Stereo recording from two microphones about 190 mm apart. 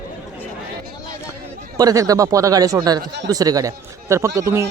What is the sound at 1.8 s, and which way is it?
Speech, 20° right (ahead or behind).